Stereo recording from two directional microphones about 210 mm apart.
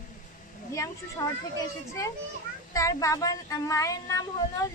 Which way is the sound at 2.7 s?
15° left (ahead or behind).